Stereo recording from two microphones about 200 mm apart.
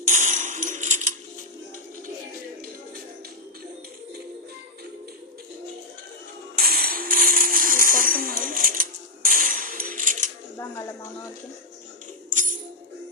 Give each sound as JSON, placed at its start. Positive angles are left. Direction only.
{"t": 0.0, "sound": "coin", "side_deg": -40}
{"t": 6.6, "sound": "tambourine", "side_deg": -50}
{"t": 12.3, "sound": "tambourine", "side_deg": -40}